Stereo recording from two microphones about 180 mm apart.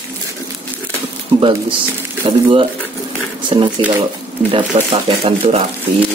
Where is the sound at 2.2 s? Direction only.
25° right (ahead or behind).